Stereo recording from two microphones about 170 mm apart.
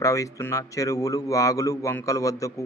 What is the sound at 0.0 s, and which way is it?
A man's voice, 20° left (ahead or behind).